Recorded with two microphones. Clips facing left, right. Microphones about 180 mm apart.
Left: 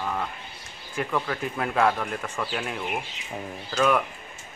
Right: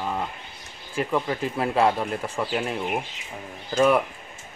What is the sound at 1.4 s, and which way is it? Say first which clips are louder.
Speech: right 1 dB; 30° right (ahead or behind).